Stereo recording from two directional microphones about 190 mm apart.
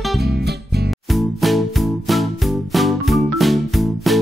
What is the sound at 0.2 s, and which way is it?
Music, 60° right (ahead or behind).